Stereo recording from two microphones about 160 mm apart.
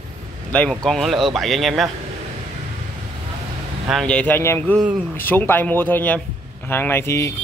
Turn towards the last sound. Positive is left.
turn(degrees=15)  # may be behind; listen again after turning